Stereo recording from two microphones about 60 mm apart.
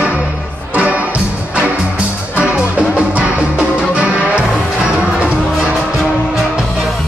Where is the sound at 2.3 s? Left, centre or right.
Right.